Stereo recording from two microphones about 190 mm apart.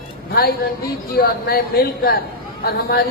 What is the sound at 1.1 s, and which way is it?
A man's voice, 50° left (ahead or behind).